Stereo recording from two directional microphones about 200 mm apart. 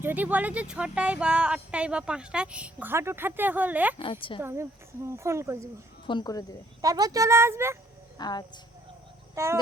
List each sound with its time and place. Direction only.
0.0 s speech: 10° right (ahead or behind)
3.9 s speech: 25° left (ahead or behind)
4.4 s speech: 10° right (ahead or behind)
6.1 s speech: 20° left (ahead or behind)
6.8 s speech: 20° right (ahead or behind)
8.2 s speech: 20° left (ahead or behind)
9.3 s speech: 15° right (ahead or behind)